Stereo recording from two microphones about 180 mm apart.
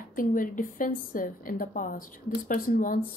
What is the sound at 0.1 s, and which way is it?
A woman's voice, 50° left (ahead or behind).